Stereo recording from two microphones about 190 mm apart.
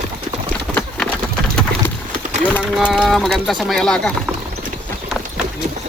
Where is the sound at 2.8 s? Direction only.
5° right (ahead or behind).